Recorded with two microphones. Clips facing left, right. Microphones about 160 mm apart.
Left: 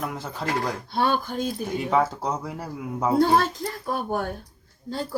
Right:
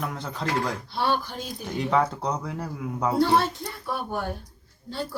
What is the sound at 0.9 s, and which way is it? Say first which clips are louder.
Speech: left 3 dB; 50° left (ahead or behind).